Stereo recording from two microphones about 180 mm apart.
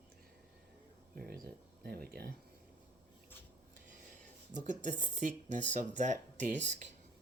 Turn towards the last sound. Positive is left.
turn(degrees=-45)  # may be behind; listen again after turning